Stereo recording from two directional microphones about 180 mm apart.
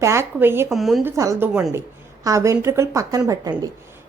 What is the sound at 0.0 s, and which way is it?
Speech, 15° right (ahead or behind).